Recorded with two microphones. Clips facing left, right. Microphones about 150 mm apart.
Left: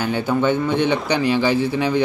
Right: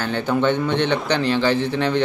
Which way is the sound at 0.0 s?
10° left (ahead or behind).